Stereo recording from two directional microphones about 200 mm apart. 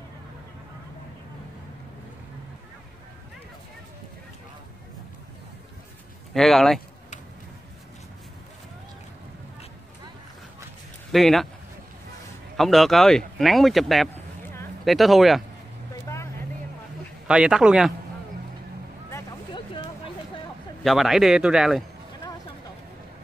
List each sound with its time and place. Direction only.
6.3 s speech: centre (ahead or behind)
11.1 s speech: centre (ahead or behind)
12.5 s speech: centre (ahead or behind)
14.4 s a sound: 15° left (ahead or behind)
14.9 s speech: centre (ahead or behind)
17.3 s speech: 5° right (ahead or behind)
19.1 s a sound: 25° left (ahead or behind)
20.8 s speech: centre (ahead or behind)